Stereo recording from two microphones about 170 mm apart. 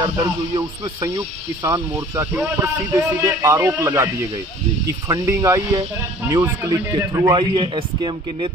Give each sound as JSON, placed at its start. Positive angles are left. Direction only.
{"t": 0.0, "sound": "speech", "side_deg": -20}